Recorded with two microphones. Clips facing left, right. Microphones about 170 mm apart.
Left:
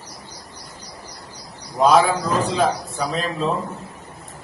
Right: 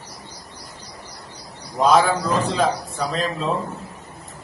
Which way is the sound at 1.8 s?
5° left (ahead or behind).